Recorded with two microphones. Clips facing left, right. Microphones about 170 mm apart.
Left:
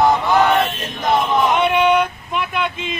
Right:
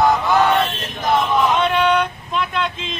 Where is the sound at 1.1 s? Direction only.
15° left (ahead or behind).